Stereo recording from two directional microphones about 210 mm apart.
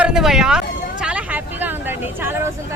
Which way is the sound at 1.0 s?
5° right (ahead or behind).